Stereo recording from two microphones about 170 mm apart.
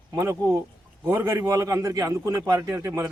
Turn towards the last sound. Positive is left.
turn(degrees=-15)  # may be behind; listen again after turning